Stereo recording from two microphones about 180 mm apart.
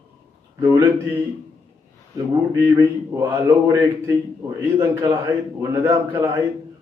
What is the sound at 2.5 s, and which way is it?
A man's voice, 15° right (ahead or behind).